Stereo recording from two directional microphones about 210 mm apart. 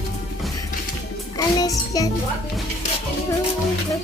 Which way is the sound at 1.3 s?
15° left (ahead or behind).